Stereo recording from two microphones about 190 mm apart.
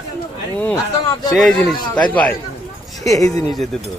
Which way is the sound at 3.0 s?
15° left (ahead or behind).